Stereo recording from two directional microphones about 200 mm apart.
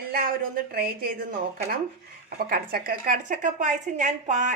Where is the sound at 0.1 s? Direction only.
45° right (ahead or behind).